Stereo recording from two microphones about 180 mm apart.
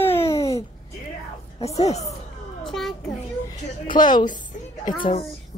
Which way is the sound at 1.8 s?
35° left (ahead or behind).